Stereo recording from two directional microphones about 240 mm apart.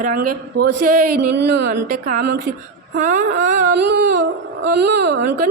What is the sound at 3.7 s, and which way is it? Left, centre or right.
A woman's voice, right.